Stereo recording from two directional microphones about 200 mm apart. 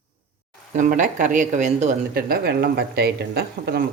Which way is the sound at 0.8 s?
40° right (ahead or behind).